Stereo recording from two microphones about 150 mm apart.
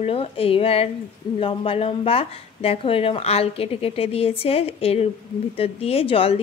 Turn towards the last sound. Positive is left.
turn(degrees=40)  # may be behind; listen again after turning